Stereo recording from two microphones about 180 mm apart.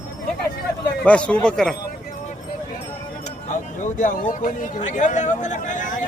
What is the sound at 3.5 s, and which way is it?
Speech, 45° left (ahead or behind).